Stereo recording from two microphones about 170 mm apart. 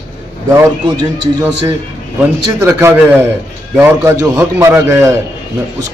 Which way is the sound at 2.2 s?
15° right (ahead or behind).